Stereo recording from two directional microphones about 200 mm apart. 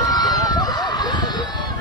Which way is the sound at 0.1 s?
20° left (ahead or behind).